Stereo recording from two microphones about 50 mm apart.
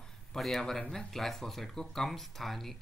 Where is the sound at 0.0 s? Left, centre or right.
Centre.